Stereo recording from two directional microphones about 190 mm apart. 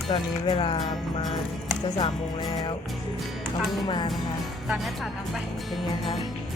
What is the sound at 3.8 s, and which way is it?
Speech, 25° left (ahead or behind).